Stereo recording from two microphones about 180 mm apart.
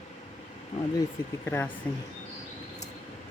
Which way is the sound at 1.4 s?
10° left (ahead or behind).